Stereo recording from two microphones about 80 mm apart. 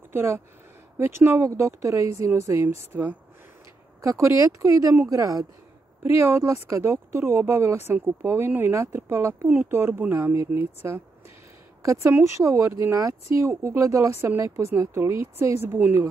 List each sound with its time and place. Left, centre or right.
0.1 s speech: right
6.0 s speech: right